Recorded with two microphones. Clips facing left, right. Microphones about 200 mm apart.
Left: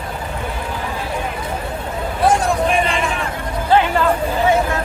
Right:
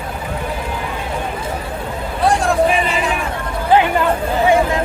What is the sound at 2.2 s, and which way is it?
Vehicle, centre (ahead or behind).